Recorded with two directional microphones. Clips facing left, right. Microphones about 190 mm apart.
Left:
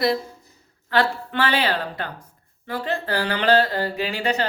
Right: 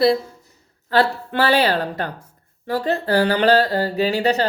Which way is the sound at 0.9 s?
35° right (ahead or behind).